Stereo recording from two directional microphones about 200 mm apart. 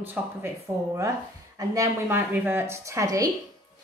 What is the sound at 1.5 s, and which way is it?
A woman's voice, 15° right (ahead or behind).